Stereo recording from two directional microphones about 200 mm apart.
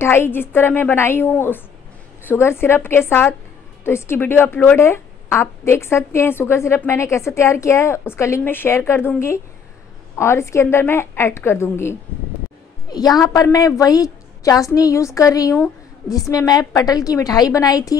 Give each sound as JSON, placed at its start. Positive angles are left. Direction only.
{"t": 0.0, "sound": "speech", "side_deg": 10}